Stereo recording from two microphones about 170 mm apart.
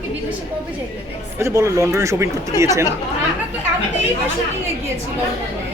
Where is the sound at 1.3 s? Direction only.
15° right (ahead or behind).